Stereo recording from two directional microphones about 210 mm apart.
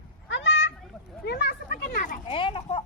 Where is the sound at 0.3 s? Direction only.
60° left (ahead or behind); by 2.3 s 40° left (ahead or behind).